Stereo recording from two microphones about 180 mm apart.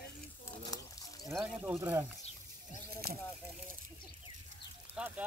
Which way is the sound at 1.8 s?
15° right (ahead or behind).